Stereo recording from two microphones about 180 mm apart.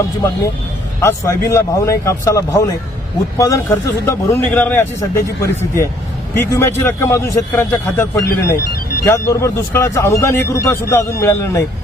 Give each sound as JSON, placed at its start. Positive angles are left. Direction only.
{"t": 1.0, "sound": "speech", "side_deg": 15}